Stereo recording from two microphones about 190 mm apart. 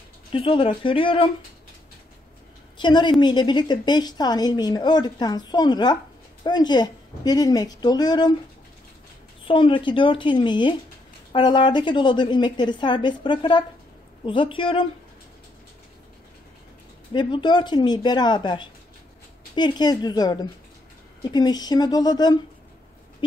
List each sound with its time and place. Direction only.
0.3 s a woman's voice: 25° left (ahead or behind)
2.8 s a woman's voice: 25° left (ahead or behind)
9.4 s a woman's voice: 25° left (ahead or behind)
17.1 s a woman's voice: 25° left (ahead or behind)